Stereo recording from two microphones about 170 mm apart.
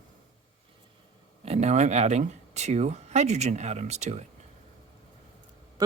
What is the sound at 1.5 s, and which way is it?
Speech, 40° right (ahead or behind).